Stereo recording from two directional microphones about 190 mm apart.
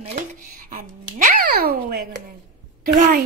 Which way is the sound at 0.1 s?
45° right (ahead or behind).